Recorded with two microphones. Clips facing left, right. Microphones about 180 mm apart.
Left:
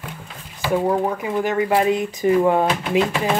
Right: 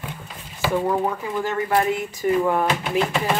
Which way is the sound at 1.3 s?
20° left (ahead or behind).